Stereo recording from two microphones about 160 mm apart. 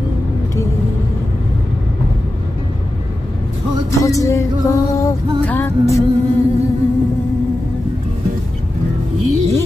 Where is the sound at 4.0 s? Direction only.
20° left (ahead or behind).